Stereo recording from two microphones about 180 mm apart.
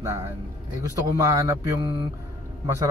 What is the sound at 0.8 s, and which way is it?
A man's voice, 20° right (ahead or behind).